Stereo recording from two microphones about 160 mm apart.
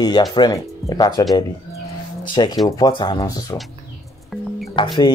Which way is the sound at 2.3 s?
30° left (ahead or behind).